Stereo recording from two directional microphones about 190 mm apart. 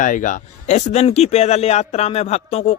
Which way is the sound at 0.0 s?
45° left (ahead or behind).